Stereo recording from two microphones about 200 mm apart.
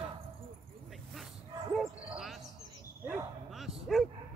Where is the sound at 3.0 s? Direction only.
10° right (ahead or behind).